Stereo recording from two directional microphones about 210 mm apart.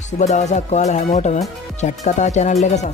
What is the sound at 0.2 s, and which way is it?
Music, 35° left (ahead or behind).